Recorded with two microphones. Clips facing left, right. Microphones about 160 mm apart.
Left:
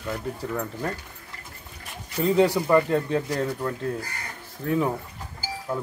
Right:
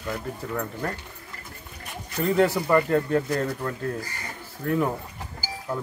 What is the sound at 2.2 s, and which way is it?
Speech, centre (ahead or behind).